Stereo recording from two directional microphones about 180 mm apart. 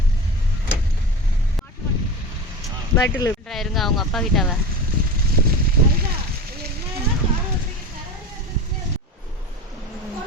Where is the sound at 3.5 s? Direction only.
Centre (ahead or behind).